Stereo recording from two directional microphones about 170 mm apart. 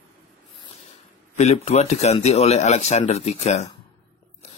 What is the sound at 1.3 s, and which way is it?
Speech, 40° left (ahead or behind).